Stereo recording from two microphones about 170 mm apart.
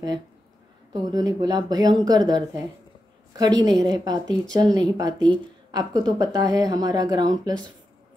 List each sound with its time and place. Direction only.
1.0 s speech: 20° right (ahead or behind)